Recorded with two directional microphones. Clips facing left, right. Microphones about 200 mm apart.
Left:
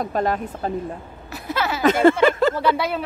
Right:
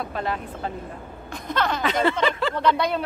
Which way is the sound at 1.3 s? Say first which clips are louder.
Left 1 dB; 5° left (ahead or behind).